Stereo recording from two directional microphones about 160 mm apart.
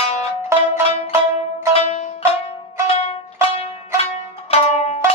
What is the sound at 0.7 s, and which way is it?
Music, 40° left (ahead or behind).